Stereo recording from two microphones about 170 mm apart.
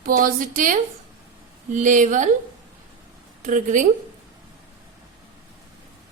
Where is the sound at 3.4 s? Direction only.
50° right (ahead or behind).